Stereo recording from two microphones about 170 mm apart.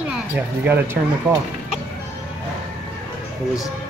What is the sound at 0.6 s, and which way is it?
Speech, 10° right (ahead or behind).